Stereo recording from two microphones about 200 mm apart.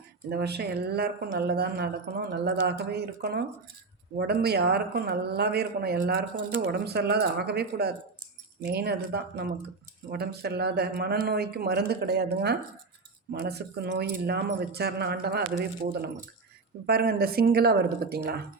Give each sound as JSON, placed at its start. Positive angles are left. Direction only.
{"t": 0.3, "sound": "speech", "side_deg": -55}
{"t": 16.8, "sound": "speech", "side_deg": -50}